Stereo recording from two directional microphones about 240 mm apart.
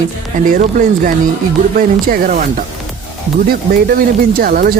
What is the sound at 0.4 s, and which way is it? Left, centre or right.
Speech, right.